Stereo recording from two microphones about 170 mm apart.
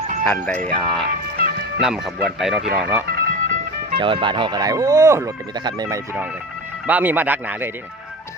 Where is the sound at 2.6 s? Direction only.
75° right (ahead or behind).